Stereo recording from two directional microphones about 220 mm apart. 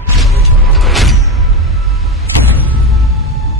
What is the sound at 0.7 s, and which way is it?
Music, centre (ahead or behind).